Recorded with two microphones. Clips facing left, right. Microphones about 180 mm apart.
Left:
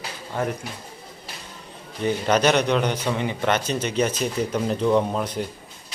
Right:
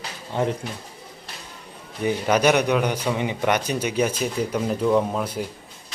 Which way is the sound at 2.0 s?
10° right (ahead or behind).